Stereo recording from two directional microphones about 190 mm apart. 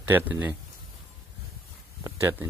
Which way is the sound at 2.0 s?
15° right (ahead or behind).